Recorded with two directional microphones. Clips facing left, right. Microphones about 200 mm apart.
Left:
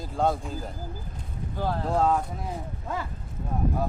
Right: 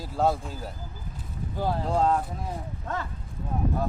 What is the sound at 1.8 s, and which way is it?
Speech, centre (ahead or behind).